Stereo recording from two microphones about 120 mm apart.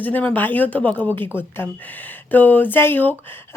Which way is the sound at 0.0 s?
15° left (ahead or behind).